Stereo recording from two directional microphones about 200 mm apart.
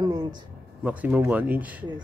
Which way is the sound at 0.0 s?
20° right (ahead or behind).